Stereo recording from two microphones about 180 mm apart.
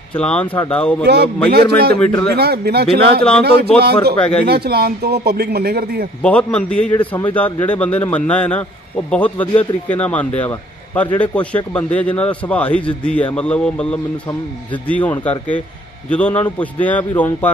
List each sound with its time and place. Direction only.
0.1 s speech: 5° left (ahead or behind)
1.0 s a man's voice: 65° right (ahead or behind)
2.0 s speech: 10° left (ahead or behind)
2.3 s a man's voice: 60° right (ahead or behind)
4.2 s speech: 5° left (ahead or behind)
4.5 s a man's voice: 60° right (ahead or behind)
6.2 s speech: 5° left (ahead or behind)